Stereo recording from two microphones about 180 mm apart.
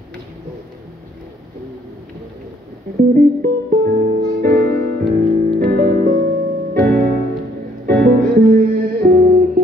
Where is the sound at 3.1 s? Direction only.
55° right (ahead or behind).